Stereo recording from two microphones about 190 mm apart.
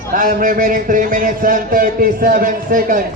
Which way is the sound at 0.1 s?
45° right (ahead or behind).